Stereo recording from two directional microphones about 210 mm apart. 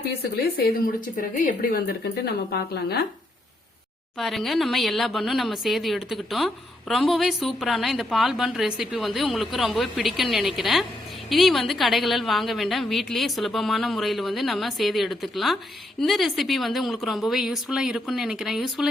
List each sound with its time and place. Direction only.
0.2 s speech: 45° left (ahead or behind)
4.2 s a woman's voice: centre (ahead or behind)